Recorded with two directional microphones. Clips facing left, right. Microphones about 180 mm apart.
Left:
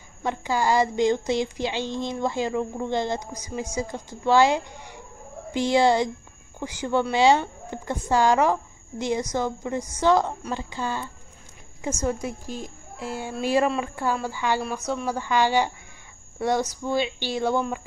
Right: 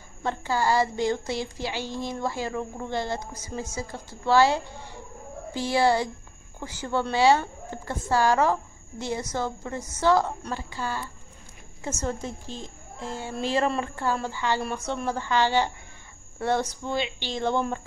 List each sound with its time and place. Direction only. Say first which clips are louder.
0.2 s speech: left 1 dB; 15° left (ahead or behind)
14.6 s speech: left 2 dB; centre (ahead or behind)